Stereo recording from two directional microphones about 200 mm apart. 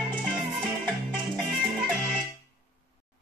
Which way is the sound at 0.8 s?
20° right (ahead or behind).